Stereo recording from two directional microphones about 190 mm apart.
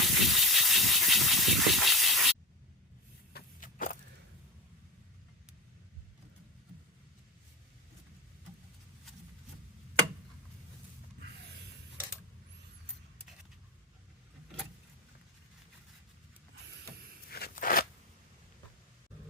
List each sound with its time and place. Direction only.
0.0 s steam: centre (ahead or behind)
3.3 s a sound: 45° left (ahead or behind)
17.2 s crunch: 55° left (ahead or behind)